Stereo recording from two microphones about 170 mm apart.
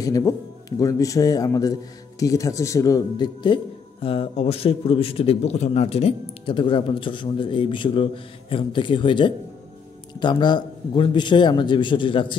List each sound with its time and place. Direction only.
0.0 s speech: 20° left (ahead or behind)
4.0 s a man's voice: 35° left (ahead or behind)